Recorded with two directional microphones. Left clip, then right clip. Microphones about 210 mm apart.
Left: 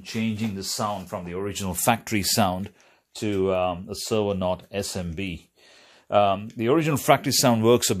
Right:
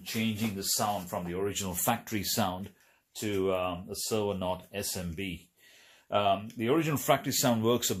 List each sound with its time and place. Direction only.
0.2 s speech: 50° left (ahead or behind)